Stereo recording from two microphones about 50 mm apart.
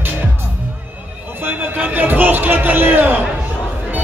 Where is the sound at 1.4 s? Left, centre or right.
Right.